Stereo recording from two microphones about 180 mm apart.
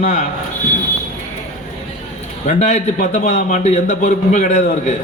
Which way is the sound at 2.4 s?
40° left (ahead or behind).